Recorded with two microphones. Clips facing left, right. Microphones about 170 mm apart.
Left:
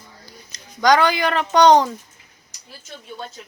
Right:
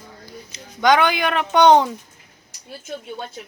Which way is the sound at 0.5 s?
5° right (ahead or behind).